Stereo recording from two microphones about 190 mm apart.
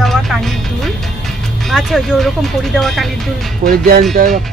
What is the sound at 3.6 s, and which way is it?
Speech, 55° right (ahead or behind).